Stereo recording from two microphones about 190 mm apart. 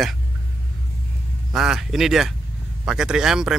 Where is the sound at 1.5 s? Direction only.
5° right (ahead or behind).